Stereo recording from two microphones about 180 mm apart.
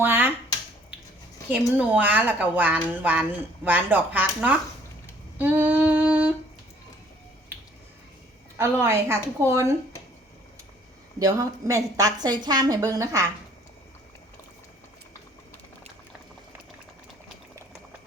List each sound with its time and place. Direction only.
0.0 s speech: 10° right (ahead or behind)
1.5 s speech: 10° right (ahead or behind)
5.4 s female singing: 10° right (ahead or behind)
8.5 s speech: 15° right (ahead or behind)
11.2 s a woman's voice: 15° right (ahead or behind)